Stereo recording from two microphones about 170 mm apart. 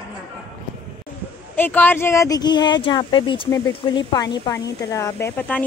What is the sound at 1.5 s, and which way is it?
Speech, 10° left (ahead or behind).